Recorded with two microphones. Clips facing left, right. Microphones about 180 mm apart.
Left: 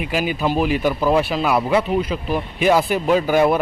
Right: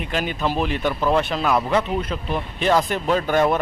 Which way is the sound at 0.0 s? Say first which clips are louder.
Left 3 dB; 5° left (ahead or behind).